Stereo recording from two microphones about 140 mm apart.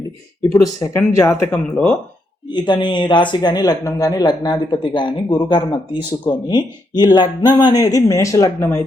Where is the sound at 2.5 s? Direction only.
35° left (ahead or behind).